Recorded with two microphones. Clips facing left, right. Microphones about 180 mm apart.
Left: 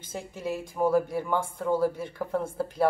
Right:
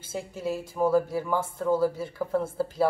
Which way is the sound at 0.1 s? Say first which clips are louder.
Right 2 dB; 5° right (ahead or behind).